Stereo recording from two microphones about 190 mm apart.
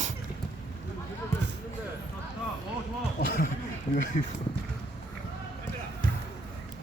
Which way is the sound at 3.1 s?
50° left (ahead or behind).